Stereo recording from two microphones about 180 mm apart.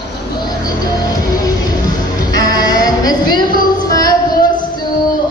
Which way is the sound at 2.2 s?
20° left (ahead or behind).